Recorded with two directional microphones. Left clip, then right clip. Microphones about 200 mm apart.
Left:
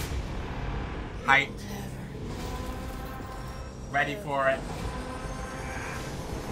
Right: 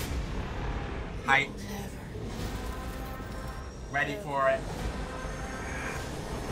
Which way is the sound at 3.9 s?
20° left (ahead or behind).